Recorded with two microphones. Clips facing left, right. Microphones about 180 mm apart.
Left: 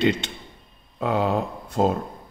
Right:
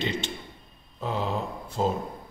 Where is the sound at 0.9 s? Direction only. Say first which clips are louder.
Left 7 dB; 65° left (ahead or behind).